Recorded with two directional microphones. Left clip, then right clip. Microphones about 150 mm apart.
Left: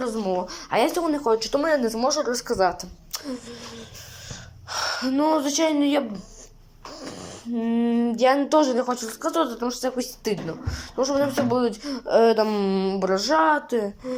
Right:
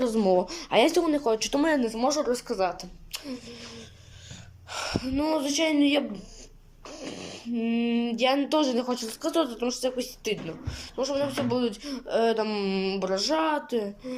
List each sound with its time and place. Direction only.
0.0 s speech: 25° right (ahead or behind)
2.3 s speech: centre (ahead or behind)
6.9 s a sound: 15° right (ahead or behind)
8.1 s speech: centre (ahead or behind)